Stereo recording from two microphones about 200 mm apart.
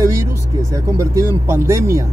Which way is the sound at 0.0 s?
15° right (ahead or behind).